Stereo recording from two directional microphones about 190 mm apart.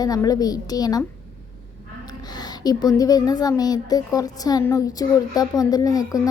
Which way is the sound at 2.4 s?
20° left (ahead or behind).